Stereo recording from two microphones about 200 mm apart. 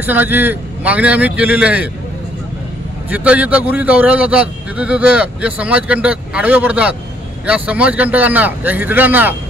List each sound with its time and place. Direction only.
0.0 s a man's voice: 10° right (ahead or behind)
3.1 s a man's voice: 5° right (ahead or behind)